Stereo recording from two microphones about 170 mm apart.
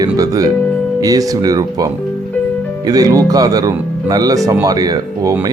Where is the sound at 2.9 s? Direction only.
20° right (ahead or behind).